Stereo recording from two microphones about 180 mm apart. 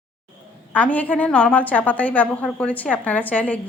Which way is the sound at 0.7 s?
10° left (ahead or behind).